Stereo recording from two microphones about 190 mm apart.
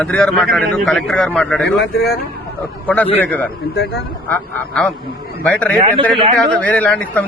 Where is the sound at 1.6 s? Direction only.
60° left (ahead or behind).